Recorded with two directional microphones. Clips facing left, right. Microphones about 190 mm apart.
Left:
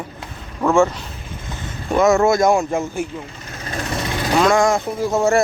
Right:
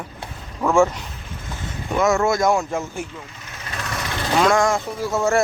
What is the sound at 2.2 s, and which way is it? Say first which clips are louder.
Speech: left 4 dB; 20° left (ahead or behind).